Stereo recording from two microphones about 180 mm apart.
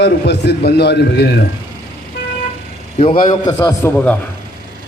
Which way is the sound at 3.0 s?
30° left (ahead or behind).